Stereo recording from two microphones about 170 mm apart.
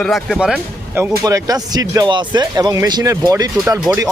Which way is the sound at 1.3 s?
20° right (ahead or behind).